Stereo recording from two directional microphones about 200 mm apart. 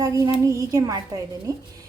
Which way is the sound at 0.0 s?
15° right (ahead or behind).